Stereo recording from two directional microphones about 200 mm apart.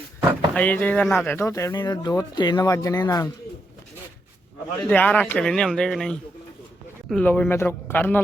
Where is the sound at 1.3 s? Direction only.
15° left (ahead or behind).